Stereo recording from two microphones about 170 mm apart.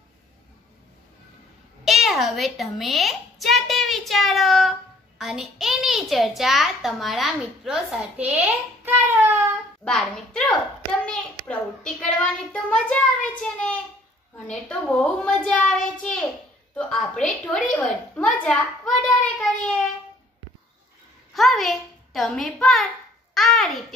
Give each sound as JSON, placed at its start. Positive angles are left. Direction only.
{"t": 1.9, "sound": "a woman's voice", "side_deg": 0}
{"t": 9.8, "sound": "a child's voice", "side_deg": 5}
{"t": 21.3, "sound": "a child's voice", "side_deg": 0}